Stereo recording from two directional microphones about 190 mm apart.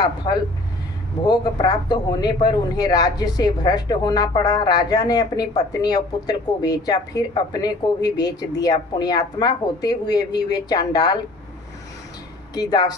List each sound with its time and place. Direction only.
0.0 s speech: 20° left (ahead or behind)
12.5 s speech: 20° left (ahead or behind)